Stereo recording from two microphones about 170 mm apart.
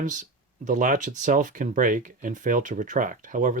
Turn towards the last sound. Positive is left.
turn(degrees=-50)  # may be behind; listen again after turning